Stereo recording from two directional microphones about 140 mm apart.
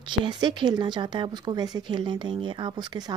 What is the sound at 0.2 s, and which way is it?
Speech, 35° right (ahead or behind).